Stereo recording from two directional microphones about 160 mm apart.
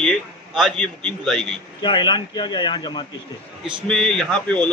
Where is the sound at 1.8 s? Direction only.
30° left (ahead or behind).